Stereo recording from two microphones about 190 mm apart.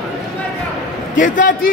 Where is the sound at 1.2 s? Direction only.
45° left (ahead or behind).